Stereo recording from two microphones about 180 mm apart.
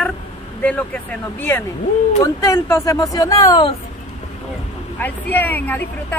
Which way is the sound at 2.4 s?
15° left (ahead or behind).